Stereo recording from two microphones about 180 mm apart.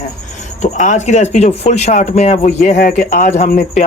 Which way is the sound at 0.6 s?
45° left (ahead or behind).